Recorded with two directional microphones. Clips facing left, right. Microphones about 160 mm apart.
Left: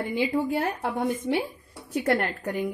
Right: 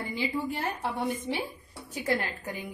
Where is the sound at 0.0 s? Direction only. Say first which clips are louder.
Left 6 dB; 65° left (ahead or behind).